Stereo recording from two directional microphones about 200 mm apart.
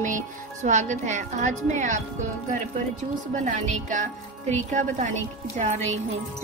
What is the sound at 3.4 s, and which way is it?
Speech, 40° right (ahead or behind).